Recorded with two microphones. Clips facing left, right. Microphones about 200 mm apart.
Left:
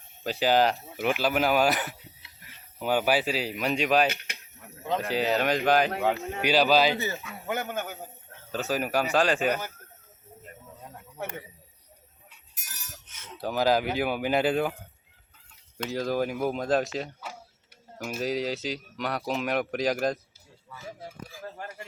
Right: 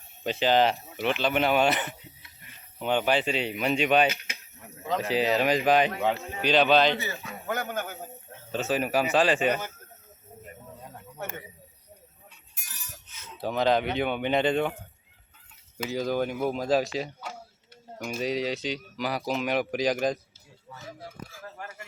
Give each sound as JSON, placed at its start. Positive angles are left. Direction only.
{"t": 0.3, "sound": "speech", "side_deg": 0}
{"t": 7.4, "sound": "speech", "side_deg": 15}
{"t": 8.5, "sound": "speech", "side_deg": 0}
{"t": 13.4, "sound": "speech", "side_deg": 5}